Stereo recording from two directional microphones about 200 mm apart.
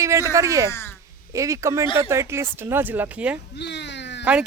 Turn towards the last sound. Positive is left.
turn(degrees=60)  # may be behind; listen again after turning